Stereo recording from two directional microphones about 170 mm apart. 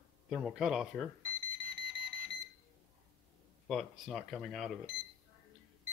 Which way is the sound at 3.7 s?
Centre (ahead or behind).